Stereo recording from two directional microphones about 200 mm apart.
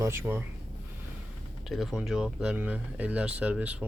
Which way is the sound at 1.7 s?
Centre (ahead or behind).